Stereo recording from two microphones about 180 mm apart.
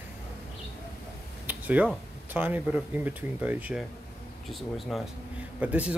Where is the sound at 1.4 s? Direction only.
10° right (ahead or behind).